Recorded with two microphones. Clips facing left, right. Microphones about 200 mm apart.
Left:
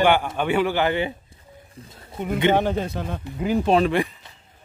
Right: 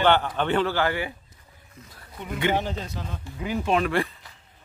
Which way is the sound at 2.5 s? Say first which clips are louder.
Left 6 dB; 55° left (ahead or behind).